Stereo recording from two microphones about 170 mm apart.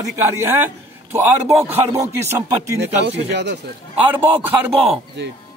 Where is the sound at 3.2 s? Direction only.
90° right.